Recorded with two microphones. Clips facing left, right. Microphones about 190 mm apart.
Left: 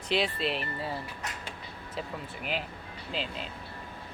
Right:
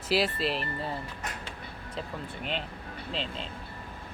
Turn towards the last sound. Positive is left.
turn(degrees=5)  # may be behind; listen again after turning